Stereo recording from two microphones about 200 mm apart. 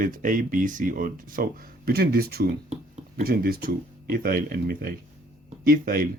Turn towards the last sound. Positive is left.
turn(degrees=-45)  # may be behind; listen again after turning